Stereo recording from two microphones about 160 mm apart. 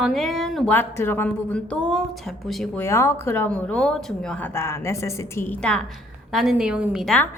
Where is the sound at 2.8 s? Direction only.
15° left (ahead or behind).